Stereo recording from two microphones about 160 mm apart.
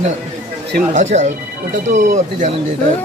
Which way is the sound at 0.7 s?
55° right (ahead or behind).